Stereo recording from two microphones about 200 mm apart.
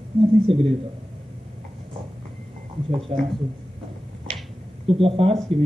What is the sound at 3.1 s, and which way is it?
Speech, 35° right (ahead or behind).